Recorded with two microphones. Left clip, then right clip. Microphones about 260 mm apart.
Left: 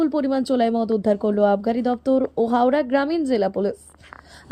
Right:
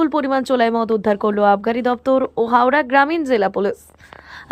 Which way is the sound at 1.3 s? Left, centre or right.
Right.